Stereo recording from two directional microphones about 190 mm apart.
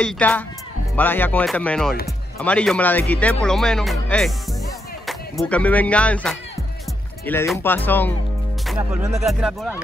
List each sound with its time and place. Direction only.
0.0 s speech: 5° left (ahead or behind)
7.5 s speech: 10° left (ahead or behind)
8.7 s music: 15° right (ahead or behind)
9.2 s speech: centre (ahead or behind)